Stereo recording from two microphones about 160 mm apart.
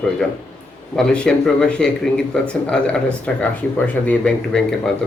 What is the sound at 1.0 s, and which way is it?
Speech, 5° left (ahead or behind).